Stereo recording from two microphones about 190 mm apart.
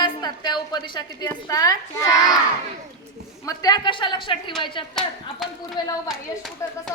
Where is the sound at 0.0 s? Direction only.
20° left (ahead or behind).